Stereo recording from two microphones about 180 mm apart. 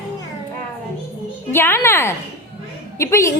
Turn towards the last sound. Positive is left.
turn(degrees=15)  # may be behind; listen again after turning